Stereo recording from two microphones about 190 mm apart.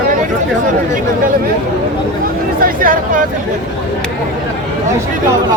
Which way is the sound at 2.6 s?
50° right (ahead or behind).